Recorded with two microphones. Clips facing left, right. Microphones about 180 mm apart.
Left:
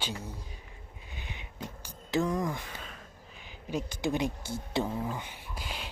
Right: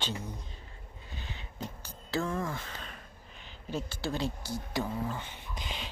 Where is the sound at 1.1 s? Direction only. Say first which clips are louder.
Even; 15° left (ahead or behind).